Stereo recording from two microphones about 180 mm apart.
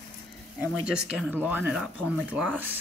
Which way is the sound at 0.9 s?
5° right (ahead or behind).